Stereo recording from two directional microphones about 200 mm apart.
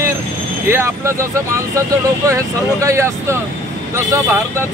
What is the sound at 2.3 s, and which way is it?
Speech, 15° right (ahead or behind).